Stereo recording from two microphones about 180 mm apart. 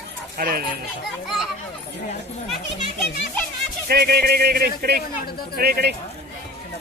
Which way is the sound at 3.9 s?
60° right (ahead or behind).